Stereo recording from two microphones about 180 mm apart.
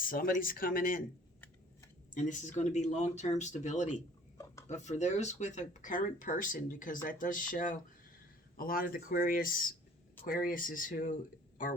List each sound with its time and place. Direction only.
0.0 s speech: 50° left (ahead or behind)
2.1 s speech: 40° left (ahead or behind)